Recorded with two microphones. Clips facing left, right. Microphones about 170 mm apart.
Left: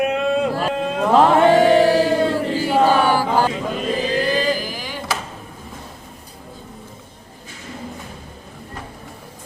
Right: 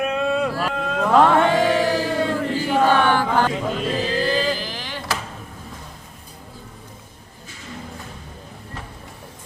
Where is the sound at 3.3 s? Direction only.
10° left (ahead or behind).